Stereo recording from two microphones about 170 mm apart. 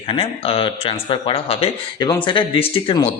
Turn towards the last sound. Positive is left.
turn(degrees=30)  # may be behind; listen again after turning